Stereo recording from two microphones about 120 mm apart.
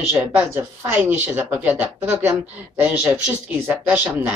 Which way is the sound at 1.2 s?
15° right (ahead or behind).